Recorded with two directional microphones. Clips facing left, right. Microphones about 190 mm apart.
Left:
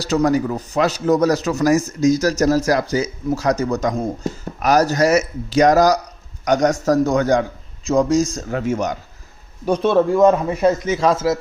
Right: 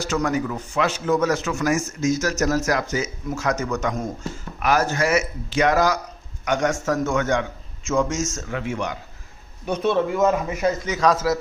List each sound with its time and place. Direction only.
0.0 s speech: 35° left (ahead or behind)
9.7 s speech: 30° left (ahead or behind)